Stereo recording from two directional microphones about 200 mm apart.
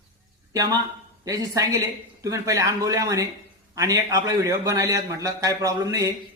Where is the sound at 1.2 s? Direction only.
15° right (ahead or behind).